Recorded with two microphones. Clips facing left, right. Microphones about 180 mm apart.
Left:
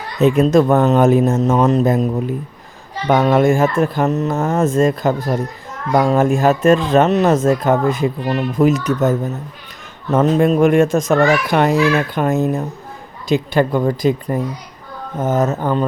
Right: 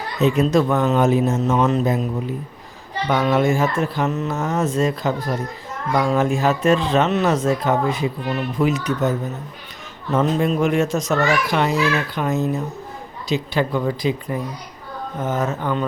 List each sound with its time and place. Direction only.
0.2 s speech: 50° left (ahead or behind)
4.4 s speech: 55° left (ahead or behind)